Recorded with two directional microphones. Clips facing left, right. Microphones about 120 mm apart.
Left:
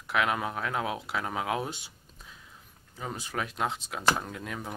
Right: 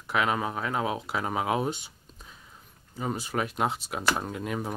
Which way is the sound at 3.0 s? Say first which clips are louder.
Right 5 dB; 5° right (ahead or behind).